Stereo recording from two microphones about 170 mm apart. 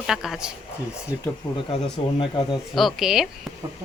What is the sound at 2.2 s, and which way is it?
Speech, 30° left (ahead or behind).